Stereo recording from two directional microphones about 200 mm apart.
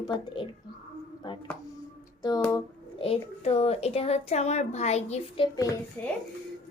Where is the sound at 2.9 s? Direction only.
30° left (ahead or behind).